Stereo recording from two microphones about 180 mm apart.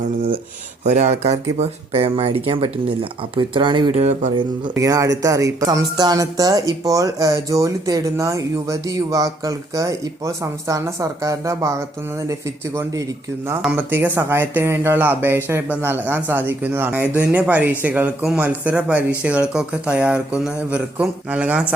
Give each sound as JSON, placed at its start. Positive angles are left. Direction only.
{"t": 0.9, "sound": "speech", "side_deg": -40}
{"t": 4.7, "sound": "speech", "side_deg": -20}